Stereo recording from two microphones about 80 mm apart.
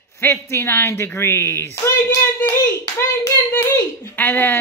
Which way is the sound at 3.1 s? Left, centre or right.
Left.